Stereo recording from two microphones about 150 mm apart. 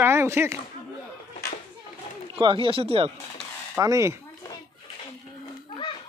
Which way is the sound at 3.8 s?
20° right (ahead or behind).